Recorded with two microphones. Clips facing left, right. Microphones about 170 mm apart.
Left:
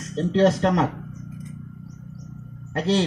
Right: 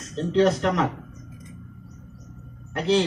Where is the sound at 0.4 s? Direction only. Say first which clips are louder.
Left 1 dB; 40° left (ahead or behind).